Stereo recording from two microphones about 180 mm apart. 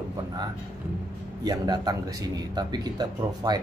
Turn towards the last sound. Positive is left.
turn(degrees=-20)  # may be behind; listen again after turning